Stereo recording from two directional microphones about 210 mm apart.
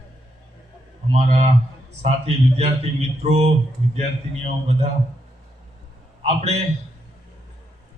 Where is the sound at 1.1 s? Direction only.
35° right (ahead or behind).